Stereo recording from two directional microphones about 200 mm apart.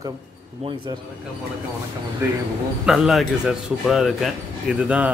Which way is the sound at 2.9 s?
Centre (ahead or behind).